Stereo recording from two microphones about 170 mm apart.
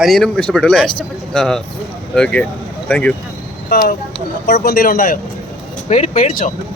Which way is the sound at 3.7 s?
60° left (ahead or behind).